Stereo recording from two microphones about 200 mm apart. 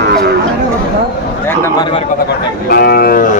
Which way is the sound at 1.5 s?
15° left (ahead or behind).